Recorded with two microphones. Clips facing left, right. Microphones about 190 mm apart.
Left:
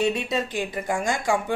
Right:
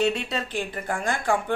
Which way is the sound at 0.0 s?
15° left (ahead or behind).